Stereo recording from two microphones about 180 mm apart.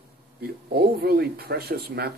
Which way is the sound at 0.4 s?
60° right (ahead or behind).